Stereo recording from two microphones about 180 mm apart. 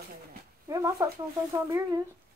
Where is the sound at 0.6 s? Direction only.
15° right (ahead or behind).